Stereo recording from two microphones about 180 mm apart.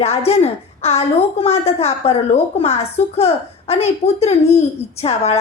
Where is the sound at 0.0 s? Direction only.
35° left (ahead or behind).